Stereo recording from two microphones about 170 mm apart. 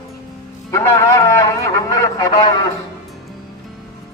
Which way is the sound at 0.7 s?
15° left (ahead or behind).